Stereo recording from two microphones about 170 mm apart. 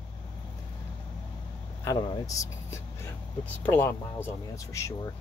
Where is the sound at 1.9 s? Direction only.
20° left (ahead or behind).